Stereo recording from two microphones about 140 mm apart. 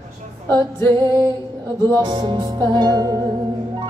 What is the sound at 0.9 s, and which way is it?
Music, 30° right (ahead or behind).